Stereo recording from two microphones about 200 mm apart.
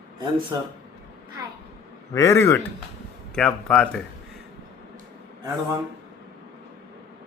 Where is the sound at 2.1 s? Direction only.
15° left (ahead or behind).